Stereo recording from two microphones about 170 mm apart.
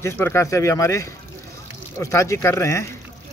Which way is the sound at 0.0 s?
15° left (ahead or behind).